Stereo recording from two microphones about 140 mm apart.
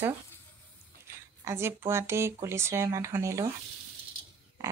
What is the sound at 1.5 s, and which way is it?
Speech, 20° right (ahead or behind).